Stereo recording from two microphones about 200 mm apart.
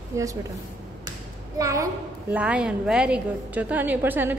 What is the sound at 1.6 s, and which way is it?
A woman's voice, 15° right (ahead or behind).